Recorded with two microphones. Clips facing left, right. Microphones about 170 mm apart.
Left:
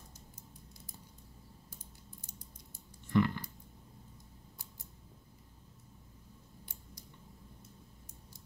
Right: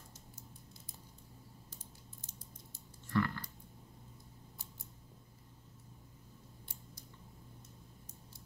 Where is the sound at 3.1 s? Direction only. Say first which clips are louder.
Left 5 dB; 20° left (ahead or behind).